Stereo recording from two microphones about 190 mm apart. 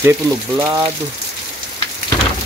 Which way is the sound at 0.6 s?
15° right (ahead or behind).